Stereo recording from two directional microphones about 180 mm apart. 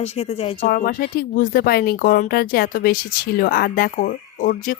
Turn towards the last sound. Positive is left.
turn(degrees=45)  # may be behind; listen again after turning